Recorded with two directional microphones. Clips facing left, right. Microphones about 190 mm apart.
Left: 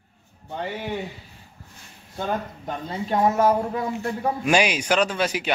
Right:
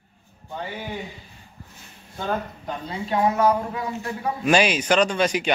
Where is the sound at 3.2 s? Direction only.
45° left (ahead or behind).